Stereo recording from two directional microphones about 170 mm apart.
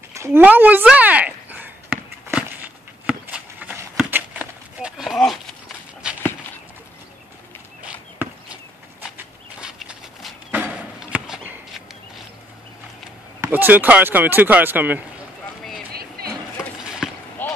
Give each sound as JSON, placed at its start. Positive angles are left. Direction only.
{"t": 0.2, "sound": "a sound", "side_deg": -10}
{"t": 6.0, "sound": "walk", "side_deg": -5}
{"t": 7.8, "sound": "chop", "side_deg": -5}
{"t": 9.1, "sound": "a sound", "side_deg": -5}
{"t": 13.4, "sound": "speech", "side_deg": -10}
{"t": 15.9, "sound": "vehicle", "side_deg": -65}
{"t": 16.8, "sound": "basketball bounce", "side_deg": -5}
{"t": 17.4, "sound": "vehicle", "side_deg": 10}